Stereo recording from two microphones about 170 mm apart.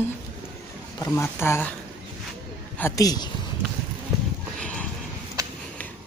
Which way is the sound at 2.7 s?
15° left (ahead or behind).